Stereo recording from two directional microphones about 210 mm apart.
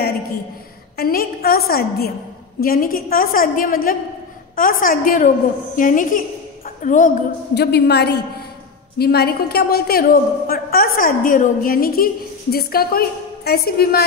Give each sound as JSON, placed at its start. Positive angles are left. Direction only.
{"t": 0.9, "sound": "a woman's voice", "side_deg": 45}
{"t": 7.5, "sound": "a woman's voice", "side_deg": 50}